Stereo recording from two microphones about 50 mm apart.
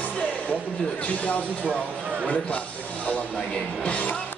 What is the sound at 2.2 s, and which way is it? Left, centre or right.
Music, left.